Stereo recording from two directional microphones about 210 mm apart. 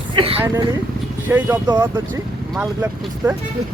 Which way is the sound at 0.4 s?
15° right (ahead or behind).